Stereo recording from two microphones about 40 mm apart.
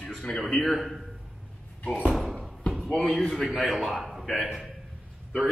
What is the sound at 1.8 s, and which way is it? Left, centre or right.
Speech, left.